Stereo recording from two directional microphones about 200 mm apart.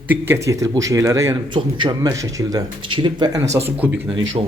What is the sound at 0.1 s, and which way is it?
A man's voice, 15° right (ahead or behind).